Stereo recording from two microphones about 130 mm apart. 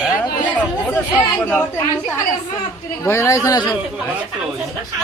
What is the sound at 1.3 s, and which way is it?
Speech, 15° left (ahead or behind).